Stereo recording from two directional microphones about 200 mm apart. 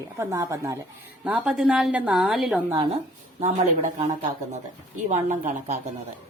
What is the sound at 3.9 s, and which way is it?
A woman's voice, 35° right (ahead or behind).